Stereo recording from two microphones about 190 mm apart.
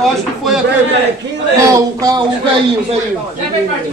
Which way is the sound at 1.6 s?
20° right (ahead or behind).